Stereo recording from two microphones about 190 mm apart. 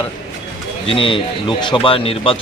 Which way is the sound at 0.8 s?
25° left (ahead or behind).